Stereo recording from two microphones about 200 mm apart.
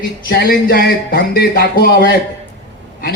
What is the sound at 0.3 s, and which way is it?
Speech, 50° left (ahead or behind).